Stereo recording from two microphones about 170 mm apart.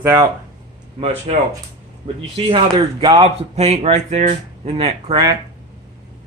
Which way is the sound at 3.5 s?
40° right (ahead or behind).